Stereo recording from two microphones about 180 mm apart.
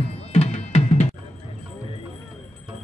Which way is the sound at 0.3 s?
35° left (ahead or behind).